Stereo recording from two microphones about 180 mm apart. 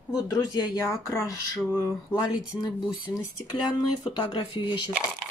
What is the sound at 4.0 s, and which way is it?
Speech, 25° left (ahead or behind).